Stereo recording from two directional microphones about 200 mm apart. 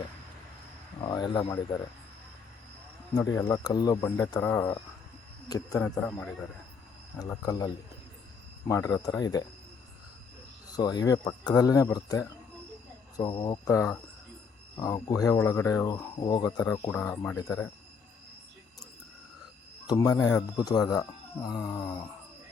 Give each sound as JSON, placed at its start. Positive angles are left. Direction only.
{"t": 1.0, "sound": "speech", "side_deg": 20}
{"t": 3.2, "sound": "speech", "side_deg": 15}
{"t": 10.7, "sound": "speech", "side_deg": 20}
{"t": 19.9, "sound": "speech", "side_deg": 20}